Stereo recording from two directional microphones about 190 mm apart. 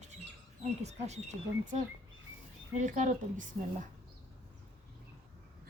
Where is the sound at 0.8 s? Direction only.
35° right (ahead or behind).